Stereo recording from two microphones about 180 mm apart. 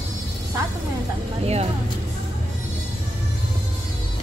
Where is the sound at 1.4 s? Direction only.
35° right (ahead or behind).